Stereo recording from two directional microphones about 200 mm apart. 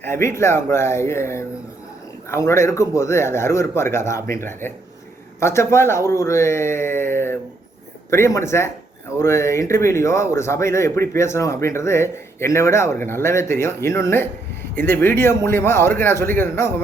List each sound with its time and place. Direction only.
0.0 s speech: 10° left (ahead or behind)